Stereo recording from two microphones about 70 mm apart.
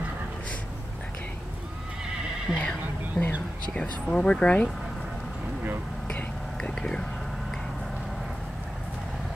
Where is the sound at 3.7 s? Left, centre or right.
Centre.